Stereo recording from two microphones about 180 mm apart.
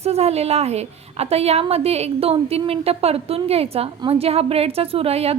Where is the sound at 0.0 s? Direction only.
35° right (ahead or behind).